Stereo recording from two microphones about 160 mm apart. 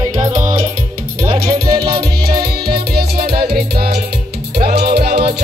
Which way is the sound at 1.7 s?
70° right (ahead or behind).